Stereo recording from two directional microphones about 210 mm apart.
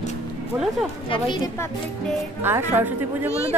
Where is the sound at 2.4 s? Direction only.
10° right (ahead or behind).